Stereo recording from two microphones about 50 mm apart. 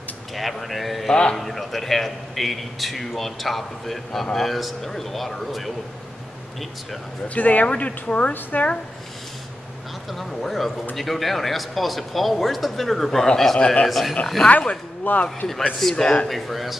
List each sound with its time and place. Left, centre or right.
0.4 s a man's voice: centre
7.2 s speech: left
10.1 s a man's voice: centre
16.3 s a man's voice: centre